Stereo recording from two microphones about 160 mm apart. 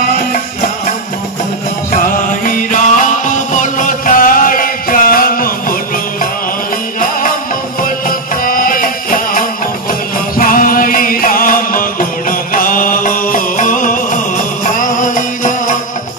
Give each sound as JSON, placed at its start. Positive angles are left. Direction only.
{"t": 2.4, "sound": "music", "side_deg": 55}
{"t": 8.5, "sound": "music", "side_deg": 60}